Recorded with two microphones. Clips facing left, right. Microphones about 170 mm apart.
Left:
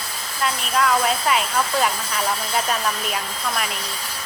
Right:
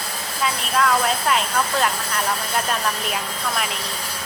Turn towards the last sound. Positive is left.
turn(degrees=0)  # may be behind; listen again after turning